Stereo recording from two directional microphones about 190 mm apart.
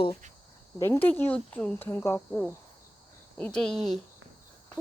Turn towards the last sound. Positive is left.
turn(degrees=5)  # may be behind; listen again after turning